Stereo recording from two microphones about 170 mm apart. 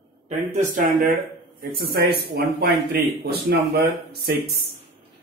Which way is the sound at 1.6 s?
60° right (ahead or behind).